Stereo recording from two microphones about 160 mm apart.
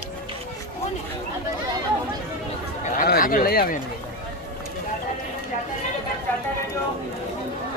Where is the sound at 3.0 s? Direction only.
65° left (ahead or behind).